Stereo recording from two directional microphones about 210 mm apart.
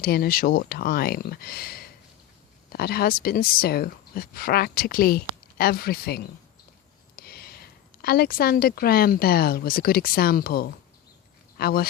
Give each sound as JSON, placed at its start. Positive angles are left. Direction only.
{"t": 0.0, "sound": "speech", "side_deg": 45}